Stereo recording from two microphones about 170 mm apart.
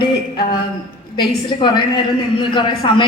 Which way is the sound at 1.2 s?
25° left (ahead or behind).